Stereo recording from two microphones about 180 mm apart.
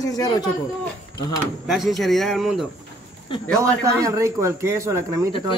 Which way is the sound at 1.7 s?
Centre (ahead or behind).